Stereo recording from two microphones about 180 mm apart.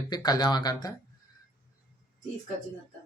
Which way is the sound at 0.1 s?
20° left (ahead or behind).